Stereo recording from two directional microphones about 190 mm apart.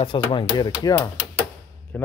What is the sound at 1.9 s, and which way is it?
Speech, 10° left (ahead or behind).